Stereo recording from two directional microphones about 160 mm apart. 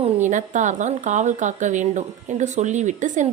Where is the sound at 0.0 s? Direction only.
50° right (ahead or behind).